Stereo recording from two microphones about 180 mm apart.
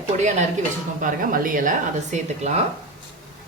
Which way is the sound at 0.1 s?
40° right (ahead or behind).